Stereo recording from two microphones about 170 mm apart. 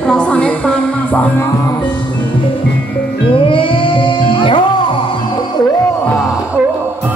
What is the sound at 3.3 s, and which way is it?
Music, 30° left (ahead or behind).